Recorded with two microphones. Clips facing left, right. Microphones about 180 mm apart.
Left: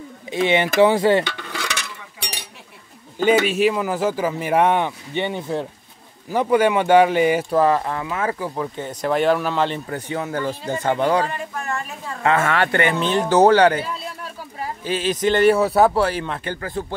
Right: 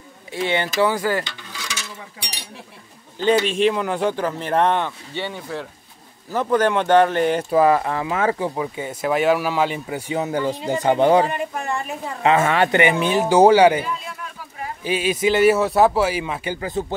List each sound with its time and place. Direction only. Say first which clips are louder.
0.3 s a sound: left 4 dB; 20° left (ahead or behind)
1.2 s a sound: left 7 dB; 65° left (ahead or behind)
3.4 s speech: even; 5° left (ahead or behind); by 5.7 s 25° left (ahead or behind)
6.3 s speech: left 2 dB; 10° left (ahead or behind)
7.5 s speech: right 1 dB; 10° right (ahead or behind); by 8.5 s 25° right (ahead or behind)
8.5 s speech: right 1 dB; 10° right (ahead or behind)